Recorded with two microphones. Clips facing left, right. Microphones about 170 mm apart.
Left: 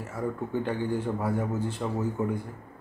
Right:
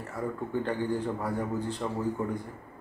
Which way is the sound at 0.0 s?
5° left (ahead or behind).